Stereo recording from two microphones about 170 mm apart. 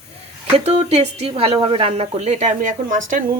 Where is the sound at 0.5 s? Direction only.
40° right (ahead or behind).